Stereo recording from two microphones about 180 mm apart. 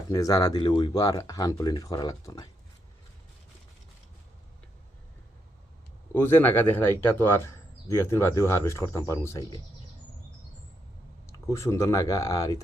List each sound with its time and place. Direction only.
0.1 s speech: 20° left (ahead or behind)
6.1 s speech: 10° left (ahead or behind)
11.3 s speech: 15° left (ahead or behind)